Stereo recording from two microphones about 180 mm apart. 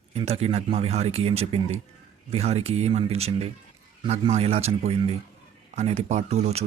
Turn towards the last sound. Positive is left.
turn(degrees=-35)  # may be behind; listen again after turning